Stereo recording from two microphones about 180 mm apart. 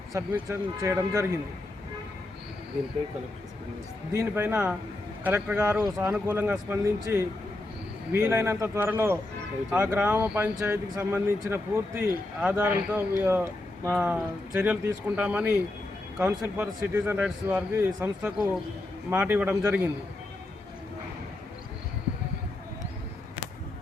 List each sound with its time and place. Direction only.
0.1 s speech: 15° right (ahead or behind)
4.1 s speech: 15° right (ahead or behind)